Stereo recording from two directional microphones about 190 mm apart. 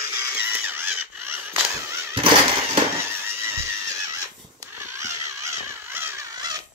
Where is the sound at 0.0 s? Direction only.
15° right (ahead or behind).